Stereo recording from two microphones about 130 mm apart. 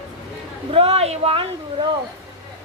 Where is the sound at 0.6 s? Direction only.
50° right (ahead or behind).